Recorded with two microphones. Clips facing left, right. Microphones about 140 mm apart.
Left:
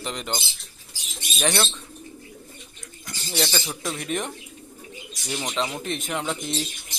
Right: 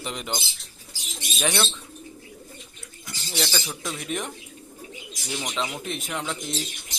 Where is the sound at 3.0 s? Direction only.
Centre (ahead or behind).